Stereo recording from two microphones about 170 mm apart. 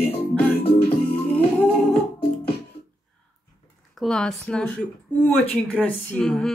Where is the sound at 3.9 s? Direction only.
5° left (ahead or behind).